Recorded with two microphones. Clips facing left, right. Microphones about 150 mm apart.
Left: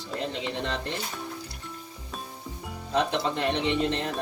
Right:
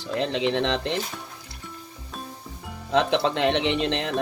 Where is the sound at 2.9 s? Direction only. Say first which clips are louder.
Right 5 dB; 85° right.